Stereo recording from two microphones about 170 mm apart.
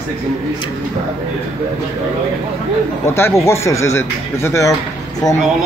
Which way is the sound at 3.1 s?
15° left (ahead or behind).